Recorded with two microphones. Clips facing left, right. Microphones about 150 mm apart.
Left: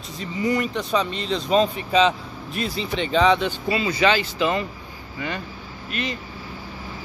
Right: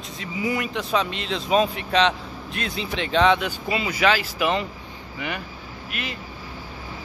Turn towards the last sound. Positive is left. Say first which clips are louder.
# left 4 dB
turn(degrees=-5)  # may be behind; listen again after turning